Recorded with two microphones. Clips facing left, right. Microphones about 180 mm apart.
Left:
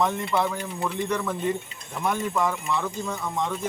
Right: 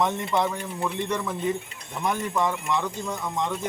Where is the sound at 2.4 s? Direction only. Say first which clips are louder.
Right 1 dB; 5° left (ahead or behind).